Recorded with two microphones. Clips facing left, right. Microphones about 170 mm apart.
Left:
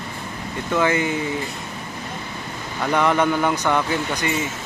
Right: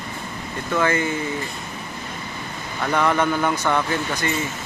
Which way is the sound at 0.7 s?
15° left (ahead or behind).